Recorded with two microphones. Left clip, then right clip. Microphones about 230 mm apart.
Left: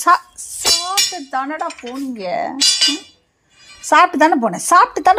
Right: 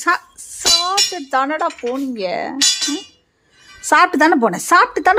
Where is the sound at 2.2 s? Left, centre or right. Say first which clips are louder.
Even; right.